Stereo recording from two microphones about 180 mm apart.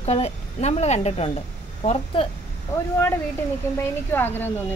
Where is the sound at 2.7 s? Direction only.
15° left (ahead or behind).